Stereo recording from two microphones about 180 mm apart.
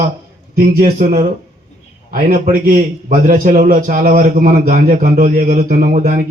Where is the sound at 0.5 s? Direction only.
55° right (ahead or behind).